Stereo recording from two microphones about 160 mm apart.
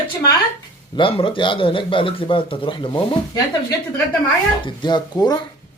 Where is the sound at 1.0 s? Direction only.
35° left (ahead or behind).